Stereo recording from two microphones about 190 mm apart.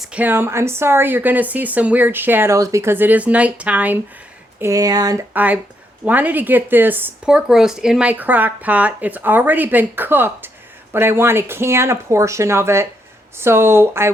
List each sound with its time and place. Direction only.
0.1 s speech: 10° right (ahead or behind)
4.6 s speech: 20° right (ahead or behind)
5.3 s speech: 10° right (ahead or behind)